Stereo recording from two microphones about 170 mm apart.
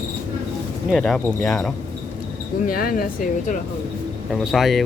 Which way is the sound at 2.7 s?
60° left (ahead or behind).